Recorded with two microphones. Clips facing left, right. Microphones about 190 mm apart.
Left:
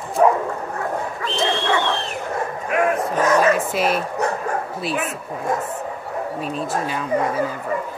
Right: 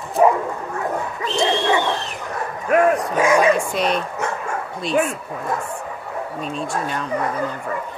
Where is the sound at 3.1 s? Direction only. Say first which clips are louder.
Right 1 dB; 10° right (ahead or behind).